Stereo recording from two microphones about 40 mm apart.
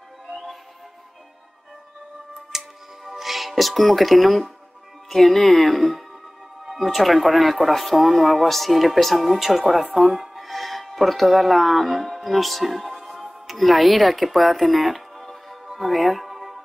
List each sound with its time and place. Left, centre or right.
0.3 s music: centre
2.3 s music: centre
5.1 s speech: centre